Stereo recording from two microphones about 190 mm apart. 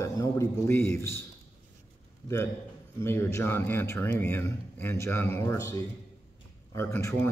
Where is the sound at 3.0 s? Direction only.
15° left (ahead or behind).